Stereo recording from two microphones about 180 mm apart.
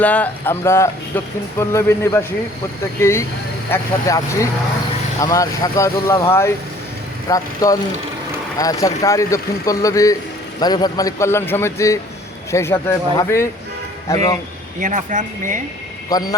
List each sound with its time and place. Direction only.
0.0 s a man's voice: 10° left (ahead or behind)
14.8 s speech: 45° right (ahead or behind)
16.1 s a man's voice: 20° left (ahead or behind)